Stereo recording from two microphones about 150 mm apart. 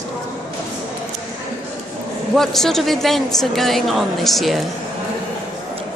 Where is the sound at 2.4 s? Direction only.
Centre (ahead or behind).